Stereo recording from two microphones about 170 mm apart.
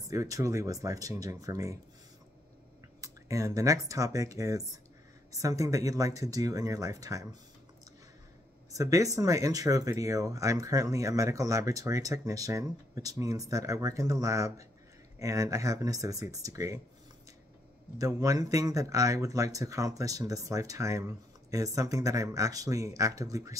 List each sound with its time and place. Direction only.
0.1 s speech: 20° right (ahead or behind)
3.0 s speech: 20° right (ahead or behind)
8.7 s speech: 20° right (ahead or behind)
17.9 s speech: 20° right (ahead or behind)